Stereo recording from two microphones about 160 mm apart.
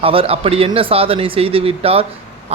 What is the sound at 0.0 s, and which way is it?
A man's voice, 35° right (ahead or behind).